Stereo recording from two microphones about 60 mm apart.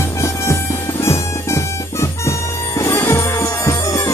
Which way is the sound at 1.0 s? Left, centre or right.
Left.